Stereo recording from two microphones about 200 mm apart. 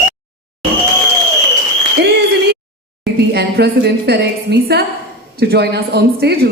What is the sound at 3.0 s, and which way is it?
A woman's voice, 55° right (ahead or behind).